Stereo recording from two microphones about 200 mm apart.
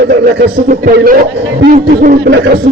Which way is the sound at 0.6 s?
45° right (ahead or behind).